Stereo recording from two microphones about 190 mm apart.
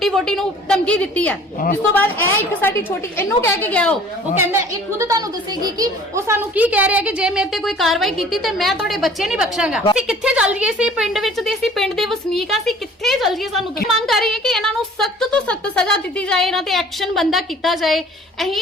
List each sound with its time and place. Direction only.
0.0 s a woman's voice: centre (ahead or behind)
2.5 s a woman's voice: 10° left (ahead or behind)
4.4 s a woman's voice: 15° right (ahead or behind)